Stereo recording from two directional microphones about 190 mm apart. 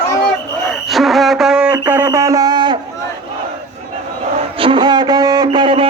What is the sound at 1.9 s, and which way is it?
Music, 10° right (ahead or behind).